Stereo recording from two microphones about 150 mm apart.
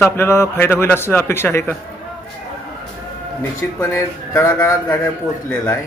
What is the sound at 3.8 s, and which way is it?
A man's voice, 20° left (ahead or behind).